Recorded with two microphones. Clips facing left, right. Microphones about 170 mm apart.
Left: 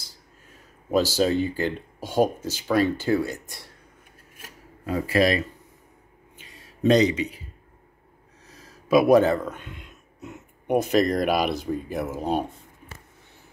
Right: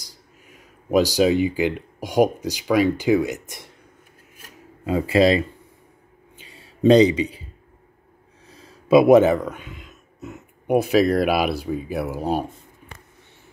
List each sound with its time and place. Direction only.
0.0 s speech: 15° right (ahead or behind)
4.8 s speech: 25° right (ahead or behind)
6.4 s a sound: 30° right (ahead or behind)
8.5 s speech: 30° right (ahead or behind); by 12.4 s 5° right (ahead or behind)